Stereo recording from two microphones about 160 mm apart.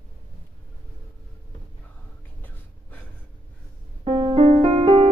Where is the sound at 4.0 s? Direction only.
35° right (ahead or behind).